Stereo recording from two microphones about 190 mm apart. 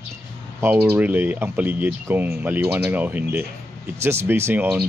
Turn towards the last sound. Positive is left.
turn(degrees=-10)  # may be behind; listen again after turning